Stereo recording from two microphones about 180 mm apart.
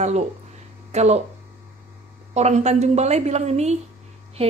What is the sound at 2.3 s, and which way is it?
Speech, 40° right (ahead or behind).